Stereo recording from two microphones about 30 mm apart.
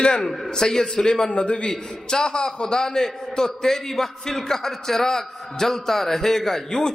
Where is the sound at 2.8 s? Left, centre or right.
Centre.